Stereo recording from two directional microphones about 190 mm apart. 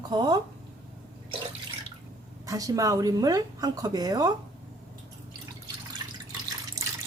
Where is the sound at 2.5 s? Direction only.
20° right (ahead or behind).